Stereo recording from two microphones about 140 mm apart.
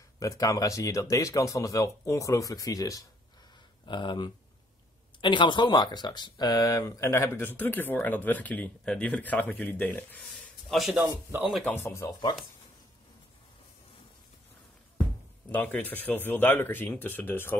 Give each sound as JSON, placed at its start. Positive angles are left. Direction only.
{"t": 0.2, "sound": "speech", "side_deg": 20}
{"t": 10.3, "sound": "a sound", "side_deg": 0}
{"t": 11.6, "sound": "speech", "side_deg": 15}
{"t": 15.5, "sound": "speech", "side_deg": 15}